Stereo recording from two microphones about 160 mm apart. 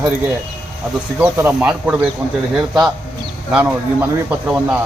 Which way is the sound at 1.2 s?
10° right (ahead or behind).